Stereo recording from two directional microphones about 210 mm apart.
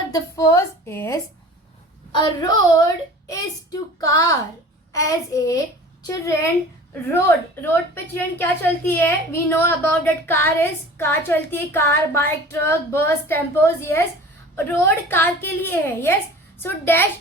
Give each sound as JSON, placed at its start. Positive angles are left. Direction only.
{"t": 0.1, "sound": "a woman's voice", "side_deg": 15}
{"t": 7.6, "sound": "a woman's voice", "side_deg": 10}